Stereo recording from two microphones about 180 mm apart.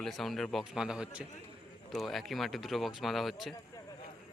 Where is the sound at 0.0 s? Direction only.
Centre (ahead or behind).